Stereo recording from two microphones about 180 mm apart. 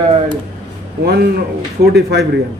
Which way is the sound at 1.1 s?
60° right (ahead or behind).